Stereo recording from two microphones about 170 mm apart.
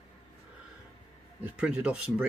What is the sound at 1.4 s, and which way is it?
Speech, 5° right (ahead or behind).